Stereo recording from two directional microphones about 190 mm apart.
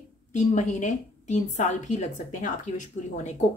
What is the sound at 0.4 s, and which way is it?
A woman's voice, 40° left (ahead or behind).